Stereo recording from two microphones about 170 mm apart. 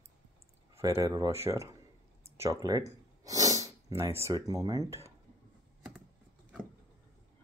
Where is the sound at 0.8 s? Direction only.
20° right (ahead or behind).